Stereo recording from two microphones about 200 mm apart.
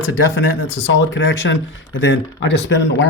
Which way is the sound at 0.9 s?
65° left (ahead or behind).